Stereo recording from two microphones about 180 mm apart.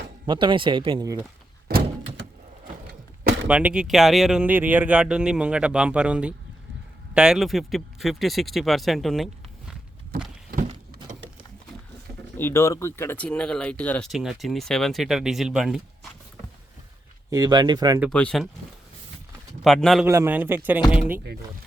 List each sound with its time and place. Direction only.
0.3 s speech: 25° right (ahead or behind)
1.6 s thunk: 65° right (ahead or behind)
3.4 s speech: 5° right (ahead or behind)
10.5 s a sound: 50° right (ahead or behind)
12.4 s speech: 15° left (ahead or behind); by 15.8 s 5° right (ahead or behind)
17.3 s speech: 20° right (ahead or behind)
18.1 s speech: 5° left (ahead or behind)
19.6 s speech: centre (ahead or behind)
20.1 s a man's voice: 15° right (ahead or behind)